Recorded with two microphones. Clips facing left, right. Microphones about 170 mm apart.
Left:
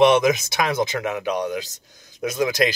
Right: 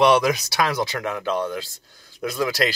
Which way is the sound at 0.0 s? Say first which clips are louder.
Left 2 dB; 20° left (ahead or behind).